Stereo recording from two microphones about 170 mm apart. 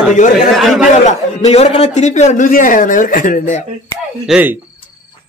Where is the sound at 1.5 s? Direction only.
35° left (ahead or behind).